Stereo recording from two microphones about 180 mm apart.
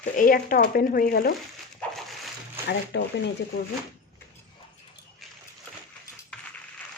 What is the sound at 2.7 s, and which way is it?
Speech, 70° left (ahead or behind).